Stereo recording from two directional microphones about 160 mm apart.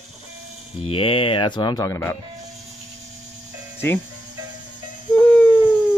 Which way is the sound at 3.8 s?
15° left (ahead or behind).